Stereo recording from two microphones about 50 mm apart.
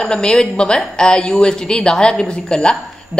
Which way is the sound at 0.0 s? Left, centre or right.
Centre.